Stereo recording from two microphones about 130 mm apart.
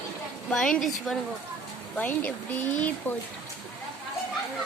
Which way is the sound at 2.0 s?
10° left (ahead or behind).